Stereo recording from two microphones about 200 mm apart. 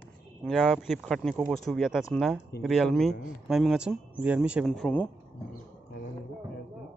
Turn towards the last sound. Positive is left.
turn(degrees=5)  # may be behind; listen again after turning